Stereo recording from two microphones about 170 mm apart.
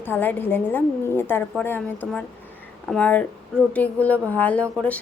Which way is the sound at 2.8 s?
5° left (ahead or behind).